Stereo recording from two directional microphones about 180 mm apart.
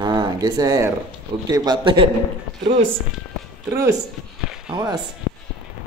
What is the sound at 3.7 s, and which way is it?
Speech, 15° right (ahead or behind).